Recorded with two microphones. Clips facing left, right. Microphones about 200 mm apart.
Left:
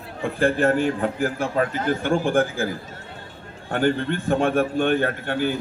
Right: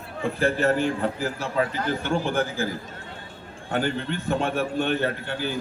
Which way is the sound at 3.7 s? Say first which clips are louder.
Left 5 dB; 50° left (ahead or behind).